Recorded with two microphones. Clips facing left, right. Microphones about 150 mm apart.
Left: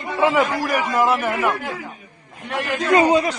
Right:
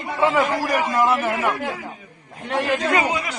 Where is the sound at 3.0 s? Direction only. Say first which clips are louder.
Left 8 dB; 35° left (ahead or behind).